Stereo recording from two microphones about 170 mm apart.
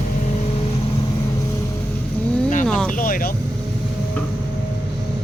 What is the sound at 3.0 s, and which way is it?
Speech, 55° left (ahead or behind).